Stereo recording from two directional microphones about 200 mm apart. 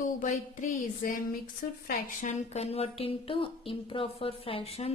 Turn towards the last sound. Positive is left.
turn(degrees=30)  # may be behind; listen again after turning